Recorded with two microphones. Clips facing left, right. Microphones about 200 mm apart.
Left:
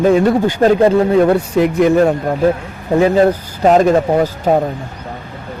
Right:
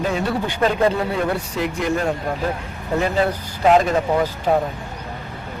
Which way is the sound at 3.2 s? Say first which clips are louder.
Left 8 dB; 40° left (ahead or behind).